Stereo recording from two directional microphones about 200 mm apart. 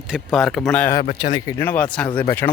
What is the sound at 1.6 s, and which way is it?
Speech, 10° left (ahead or behind).